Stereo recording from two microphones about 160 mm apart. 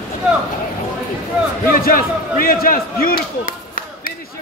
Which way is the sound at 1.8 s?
65° left (ahead or behind).